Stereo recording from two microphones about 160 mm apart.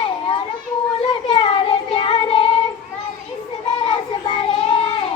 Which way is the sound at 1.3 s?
35° left (ahead or behind).